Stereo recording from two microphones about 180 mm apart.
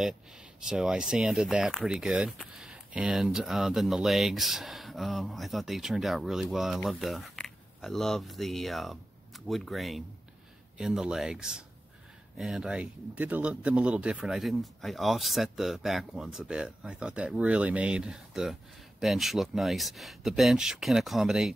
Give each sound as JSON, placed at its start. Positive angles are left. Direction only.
{"t": 0.0, "sound": "speech", "side_deg": -5}